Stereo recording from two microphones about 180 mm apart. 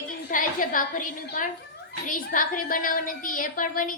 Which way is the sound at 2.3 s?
50° left (ahead or behind).